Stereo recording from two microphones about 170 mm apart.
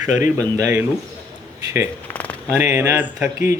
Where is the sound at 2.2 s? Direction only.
10° left (ahead or behind).